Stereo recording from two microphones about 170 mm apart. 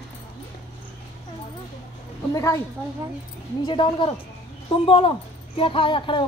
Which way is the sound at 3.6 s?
30° left (ahead or behind).